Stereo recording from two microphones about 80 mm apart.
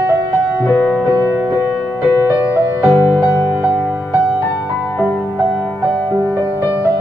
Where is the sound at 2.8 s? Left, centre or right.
Left.